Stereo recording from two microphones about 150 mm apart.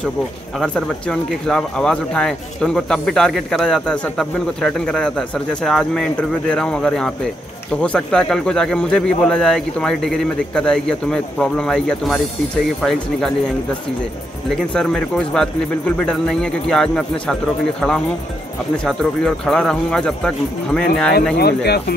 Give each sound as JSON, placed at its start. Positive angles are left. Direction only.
{"t": 0.6, "sound": "speech", "side_deg": 5}
{"t": 14.5, "sound": "speech", "side_deg": 5}
{"t": 21.4, "sound": "speech", "side_deg": 90}